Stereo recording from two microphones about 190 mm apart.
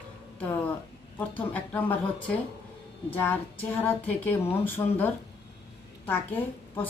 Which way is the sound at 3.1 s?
10° left (ahead or behind).